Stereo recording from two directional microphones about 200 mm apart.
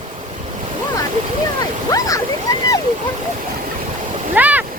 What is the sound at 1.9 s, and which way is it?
Waterfall, 15° left (ahead or behind).